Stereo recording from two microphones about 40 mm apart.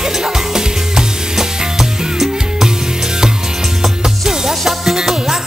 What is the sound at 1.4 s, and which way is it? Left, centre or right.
Music, centre.